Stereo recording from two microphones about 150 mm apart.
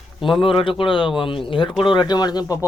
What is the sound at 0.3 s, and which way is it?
Speech, 35° left (ahead or behind).